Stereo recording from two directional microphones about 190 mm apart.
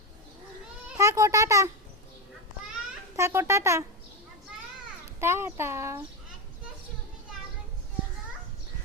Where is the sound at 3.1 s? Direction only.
15° right (ahead or behind).